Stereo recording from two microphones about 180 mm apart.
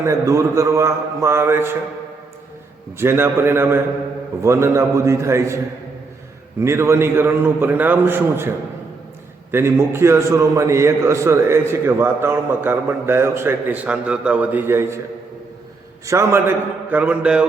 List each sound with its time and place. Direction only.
0.0 s a man's voice: 15° right (ahead or behind)
3.0 s a man's voice: 15° right (ahead or behind)
6.6 s a man's voice: 15° right (ahead or behind)
16.0 s a man's voice: 15° right (ahead or behind)